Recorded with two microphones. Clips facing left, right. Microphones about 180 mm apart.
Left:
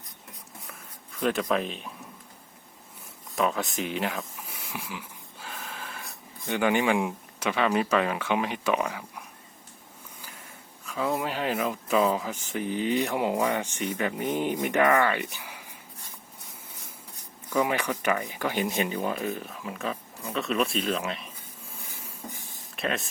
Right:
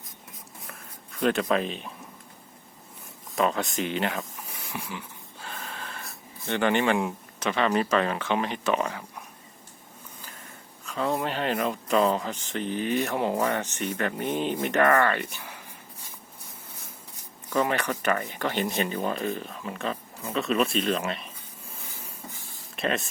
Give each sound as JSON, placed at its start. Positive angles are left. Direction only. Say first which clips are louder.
{"t": 1.2, "sound": "speech", "louder": "right 2 dB", "side_deg": 0}
{"t": 3.3, "sound": "speech", "louder": "right 1 dB", "side_deg": 0}
{"t": 4.7, "sound": "wheeze", "louder": "right 2 dB", "side_deg": 0}
{"t": 6.1, "sound": "speech", "louder": "right 1 dB", "side_deg": 15}
{"t": 10.2, "sound": "a sound", "louder": "even", "side_deg": 10}
{"t": 10.8, "sound": "speech", "louder": "right 1 dB", "side_deg": 5}
{"t": 17.5, "sound": "speech", "louder": "even", "side_deg": 10}
{"t": 22.3, "sound": "a sound", "louder": "left 2 dB", "side_deg": 15}
{"t": 22.7, "sound": "speech", "louder": "right 2 dB", "side_deg": 0}